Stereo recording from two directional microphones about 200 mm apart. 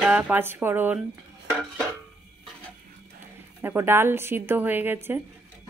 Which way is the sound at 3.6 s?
10° right (ahead or behind).